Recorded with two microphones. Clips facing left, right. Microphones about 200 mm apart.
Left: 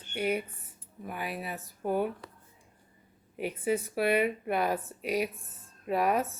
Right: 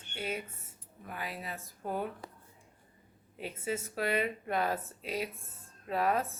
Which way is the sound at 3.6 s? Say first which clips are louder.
Left 6 dB; 15° left (ahead or behind).